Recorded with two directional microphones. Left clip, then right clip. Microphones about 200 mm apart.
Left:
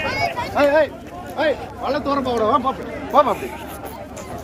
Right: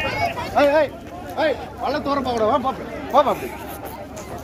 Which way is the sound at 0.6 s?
50° right (ahead or behind).